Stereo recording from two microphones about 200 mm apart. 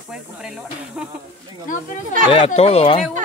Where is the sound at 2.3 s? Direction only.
30° left (ahead or behind).